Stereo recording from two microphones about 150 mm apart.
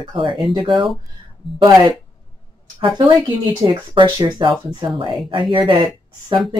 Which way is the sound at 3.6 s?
30° right (ahead or behind).